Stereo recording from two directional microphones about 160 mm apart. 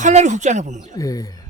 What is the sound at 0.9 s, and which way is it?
Speech, 20° left (ahead or behind).